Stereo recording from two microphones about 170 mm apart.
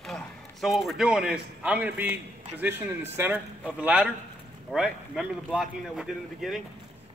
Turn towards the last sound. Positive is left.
turn(degrees=0)  # may be behind; listen again after turning